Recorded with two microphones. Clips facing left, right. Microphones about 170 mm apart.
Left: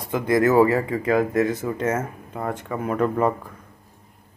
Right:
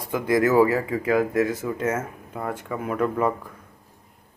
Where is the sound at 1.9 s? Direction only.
30° left (ahead or behind).